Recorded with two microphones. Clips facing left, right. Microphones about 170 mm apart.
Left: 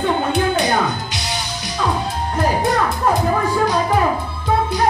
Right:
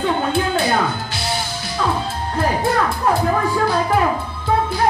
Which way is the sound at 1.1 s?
15° left (ahead or behind).